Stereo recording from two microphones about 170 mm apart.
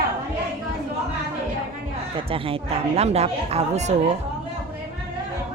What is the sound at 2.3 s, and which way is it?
Speech, 35° right (ahead or behind).